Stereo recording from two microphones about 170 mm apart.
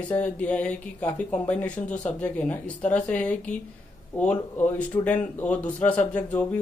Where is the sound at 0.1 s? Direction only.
10° left (ahead or behind).